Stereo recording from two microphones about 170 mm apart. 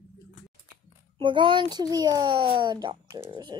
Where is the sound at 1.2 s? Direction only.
30° right (ahead or behind).